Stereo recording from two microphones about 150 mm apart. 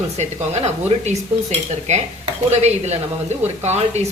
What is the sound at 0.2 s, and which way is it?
Speech, 45° right (ahead or behind).